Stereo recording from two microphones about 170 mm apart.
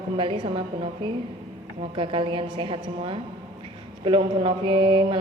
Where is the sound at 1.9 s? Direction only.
30° right (ahead or behind).